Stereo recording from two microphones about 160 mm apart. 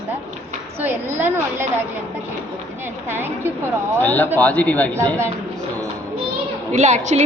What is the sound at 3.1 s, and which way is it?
Speech, 15° right (ahead or behind).